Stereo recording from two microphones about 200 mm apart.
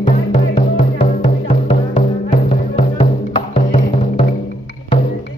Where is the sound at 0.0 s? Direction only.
35° left (ahead or behind).